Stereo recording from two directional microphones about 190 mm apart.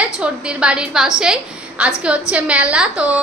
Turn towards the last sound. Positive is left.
turn(degrees=-5)  # may be behind; listen again after turning